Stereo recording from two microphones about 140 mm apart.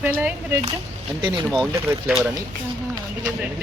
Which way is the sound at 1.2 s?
35° right (ahead or behind).